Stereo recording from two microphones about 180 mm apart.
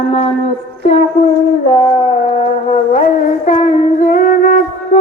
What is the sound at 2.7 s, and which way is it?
Music, 45° left (ahead or behind).